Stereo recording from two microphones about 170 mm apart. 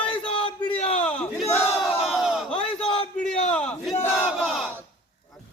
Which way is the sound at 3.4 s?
5° left (ahead or behind).